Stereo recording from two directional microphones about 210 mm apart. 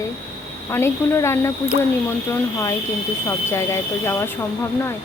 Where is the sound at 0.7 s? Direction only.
10° left (ahead or behind).